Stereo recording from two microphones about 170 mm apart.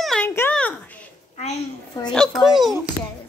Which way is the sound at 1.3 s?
40° left (ahead or behind).